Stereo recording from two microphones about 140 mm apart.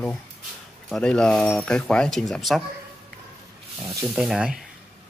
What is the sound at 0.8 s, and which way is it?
Speech, 5° left (ahead or behind).